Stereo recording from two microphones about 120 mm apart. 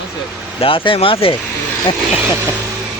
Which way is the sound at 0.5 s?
50° left (ahead or behind).